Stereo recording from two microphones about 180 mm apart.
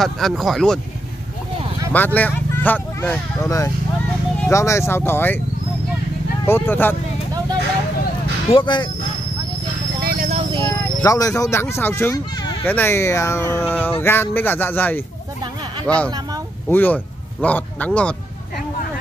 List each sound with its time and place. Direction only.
0.0 s speech: centre (ahead or behind)
1.9 s speech: 10° left (ahead or behind)
6.4 s speech: 15° left (ahead or behind)
8.5 s speech: 25° left (ahead or behind)
10.5 s speech: 20° left (ahead or behind)